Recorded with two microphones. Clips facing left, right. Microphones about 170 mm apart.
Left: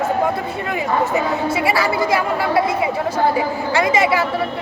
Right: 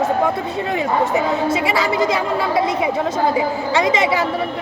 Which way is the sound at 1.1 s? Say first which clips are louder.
Right 1 dB; 20° right (ahead or behind).